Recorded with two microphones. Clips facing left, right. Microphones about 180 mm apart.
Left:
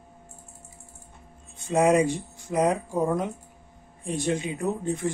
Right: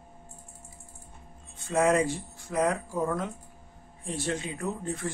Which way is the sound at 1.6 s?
20° left (ahead or behind).